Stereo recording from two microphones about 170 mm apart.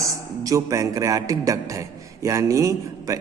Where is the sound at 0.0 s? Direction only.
20° right (ahead or behind).